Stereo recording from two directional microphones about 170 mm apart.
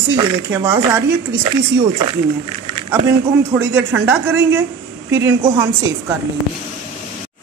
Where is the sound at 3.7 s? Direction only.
10° right (ahead or behind).